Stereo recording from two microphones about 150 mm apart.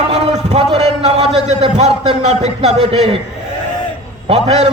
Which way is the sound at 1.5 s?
45° right (ahead or behind).